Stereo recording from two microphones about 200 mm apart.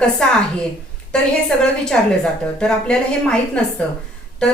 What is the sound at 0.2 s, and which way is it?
A woman's voice, 5° left (ahead or behind).